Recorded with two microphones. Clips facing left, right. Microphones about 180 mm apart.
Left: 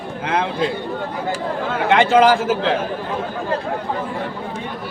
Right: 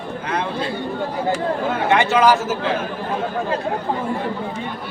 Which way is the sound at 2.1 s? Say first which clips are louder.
Left 3 dB; 55° left (ahead or behind).